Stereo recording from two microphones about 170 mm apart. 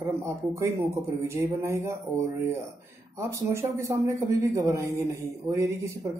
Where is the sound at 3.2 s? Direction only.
15° right (ahead or behind).